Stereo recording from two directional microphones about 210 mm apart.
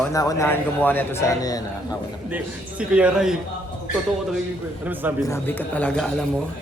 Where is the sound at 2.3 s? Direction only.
5° right (ahead or behind).